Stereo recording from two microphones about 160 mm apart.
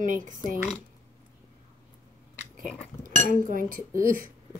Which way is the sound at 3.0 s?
60° right (ahead or behind).